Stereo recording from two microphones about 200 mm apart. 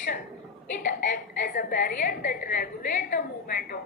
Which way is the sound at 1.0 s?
40° left (ahead or behind).